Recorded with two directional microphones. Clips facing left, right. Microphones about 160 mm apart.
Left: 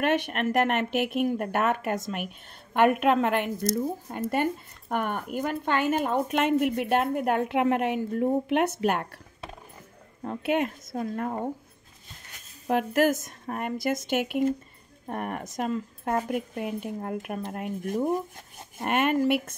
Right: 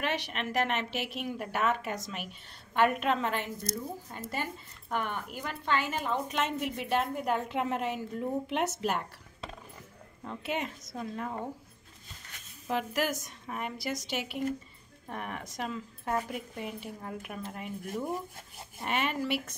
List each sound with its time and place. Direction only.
0.0 s a woman's voice: 50° left (ahead or behind)
10.2 s speech: 55° left (ahead or behind)
12.6 s speech: 55° left (ahead or behind)
18.8 s speech: 50° left (ahead or behind)